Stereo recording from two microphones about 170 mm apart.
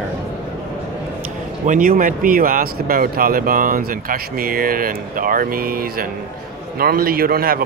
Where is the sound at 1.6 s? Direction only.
50° right (ahead or behind).